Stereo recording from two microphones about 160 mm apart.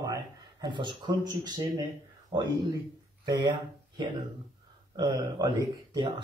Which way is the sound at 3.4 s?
30° right (ahead or behind).